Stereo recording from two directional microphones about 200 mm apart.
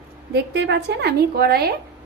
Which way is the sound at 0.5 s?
60° right (ahead or behind).